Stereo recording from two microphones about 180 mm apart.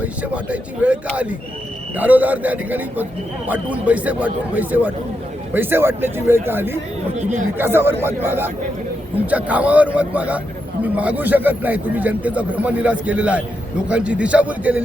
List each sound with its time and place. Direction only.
0.0 s a man's voice: 5° right (ahead or behind)